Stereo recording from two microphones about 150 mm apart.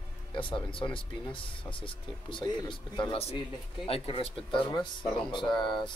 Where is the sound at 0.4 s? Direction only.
35° left (ahead or behind).